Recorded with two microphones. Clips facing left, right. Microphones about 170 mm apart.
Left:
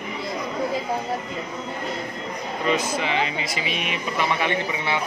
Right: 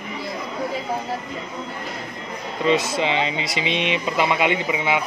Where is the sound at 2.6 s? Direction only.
25° right (ahead or behind).